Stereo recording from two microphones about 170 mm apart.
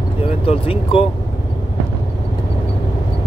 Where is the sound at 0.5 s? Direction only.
35° left (ahead or behind).